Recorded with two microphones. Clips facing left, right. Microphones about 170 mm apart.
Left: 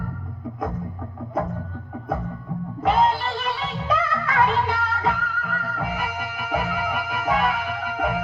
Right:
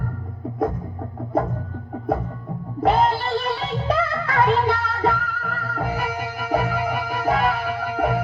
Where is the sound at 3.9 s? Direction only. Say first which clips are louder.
Right 1 dB; 35° right (ahead or behind).